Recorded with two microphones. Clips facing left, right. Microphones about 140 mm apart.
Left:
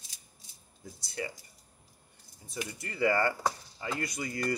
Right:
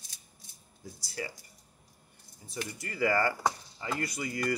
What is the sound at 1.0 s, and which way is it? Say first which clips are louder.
Speech: left 1 dB; 25° left (ahead or behind).